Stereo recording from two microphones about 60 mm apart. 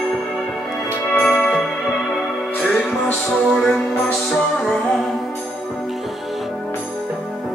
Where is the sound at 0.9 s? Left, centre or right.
Left.